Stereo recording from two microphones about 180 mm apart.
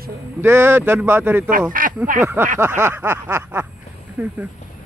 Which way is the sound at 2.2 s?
10° right (ahead or behind).